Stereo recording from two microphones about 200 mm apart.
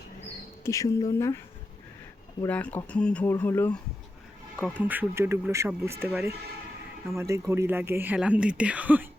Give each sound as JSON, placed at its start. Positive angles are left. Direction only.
{"t": 0.6, "sound": "speech", "side_deg": 15}
{"t": 2.5, "sound": "speech", "side_deg": 5}
{"t": 4.6, "sound": "speech", "side_deg": -10}